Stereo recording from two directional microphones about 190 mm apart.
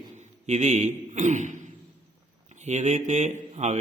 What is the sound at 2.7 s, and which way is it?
A man's voice, 40° right (ahead or behind).